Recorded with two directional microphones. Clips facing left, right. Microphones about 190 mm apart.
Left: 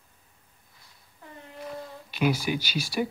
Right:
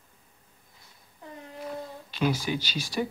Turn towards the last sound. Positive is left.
turn(degrees=10)  # may be behind; listen again after turning